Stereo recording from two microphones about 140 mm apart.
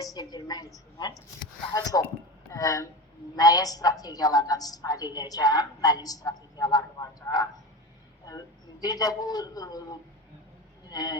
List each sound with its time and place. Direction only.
0.0 s a woman's voice: 25° left (ahead or behind)
1.7 s a woman's voice: 25° left (ahead or behind)